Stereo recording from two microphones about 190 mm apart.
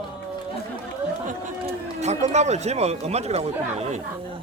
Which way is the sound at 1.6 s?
35° right (ahead or behind).